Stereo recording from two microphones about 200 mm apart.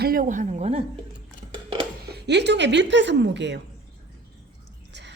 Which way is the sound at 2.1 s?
60° right (ahead or behind).